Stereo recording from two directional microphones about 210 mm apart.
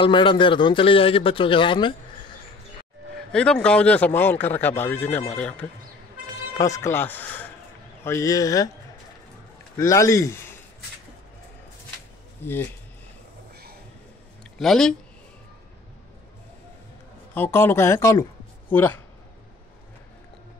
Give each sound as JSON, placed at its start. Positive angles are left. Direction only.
{"t": 0.0, "sound": "a man's voice", "side_deg": 25}
{"t": 3.3, "sound": "speech", "side_deg": 5}
{"t": 9.8, "sound": "speech", "side_deg": 15}
{"t": 14.6, "sound": "speech", "side_deg": 0}
{"t": 17.3, "sound": "speech", "side_deg": 10}